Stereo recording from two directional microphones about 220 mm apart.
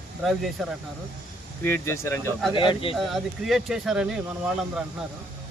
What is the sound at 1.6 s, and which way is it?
Speech, 10° left (ahead or behind).